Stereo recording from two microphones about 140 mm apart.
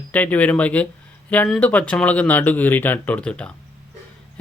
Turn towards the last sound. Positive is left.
turn(degrees=10)  # may be behind; listen again after turning